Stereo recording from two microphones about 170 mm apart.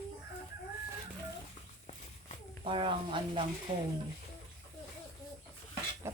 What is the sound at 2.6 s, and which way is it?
Speech, 30° right (ahead or behind).